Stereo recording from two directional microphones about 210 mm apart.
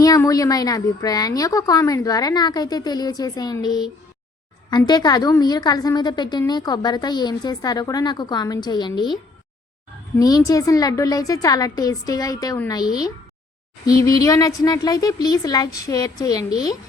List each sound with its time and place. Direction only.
0.0 s a woman's voice: 15° left (ahead or behind)
10.2 s a woman's voice: 15° left (ahead or behind)